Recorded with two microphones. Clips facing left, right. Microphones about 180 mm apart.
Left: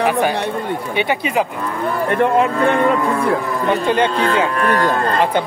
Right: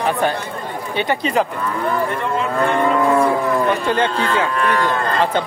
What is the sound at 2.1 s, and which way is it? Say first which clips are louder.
Speech: left 7 dB; 60° left (ahead or behind).